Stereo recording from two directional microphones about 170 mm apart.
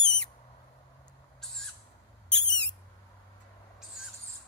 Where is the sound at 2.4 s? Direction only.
90° left.